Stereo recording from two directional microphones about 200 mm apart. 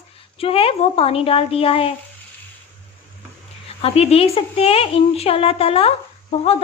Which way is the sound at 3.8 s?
30° left (ahead or behind).